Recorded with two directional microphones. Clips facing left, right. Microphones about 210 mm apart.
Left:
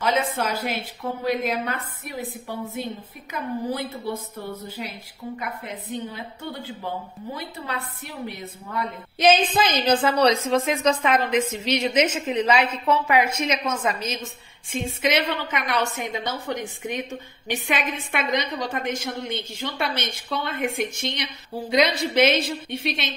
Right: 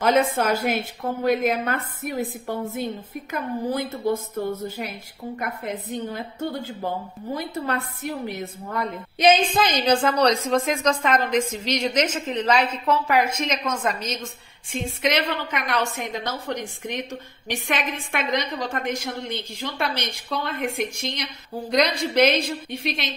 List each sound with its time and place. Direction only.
0.0 s a woman's voice: 50° right (ahead or behind)
9.8 s a woman's voice: 5° left (ahead or behind)